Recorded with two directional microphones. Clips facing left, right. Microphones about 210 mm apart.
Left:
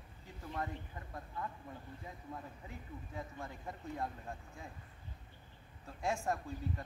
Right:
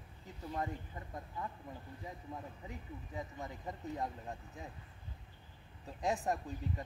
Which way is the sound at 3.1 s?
20° right (ahead or behind).